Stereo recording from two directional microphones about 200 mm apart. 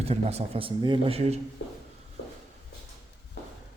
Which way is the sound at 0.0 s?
30° right (ahead or behind).